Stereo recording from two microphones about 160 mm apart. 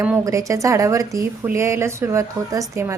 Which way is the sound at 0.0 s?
15° right (ahead or behind).